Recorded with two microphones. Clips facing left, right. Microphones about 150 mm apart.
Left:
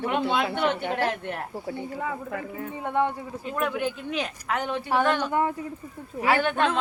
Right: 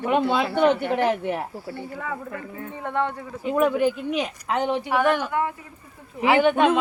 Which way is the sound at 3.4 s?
10° right (ahead or behind).